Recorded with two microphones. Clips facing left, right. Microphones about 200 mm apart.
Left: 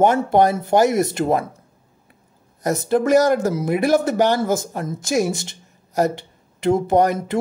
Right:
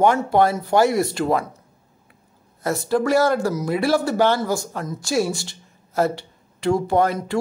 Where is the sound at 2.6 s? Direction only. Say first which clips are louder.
Left 2 dB; 20° left (ahead or behind).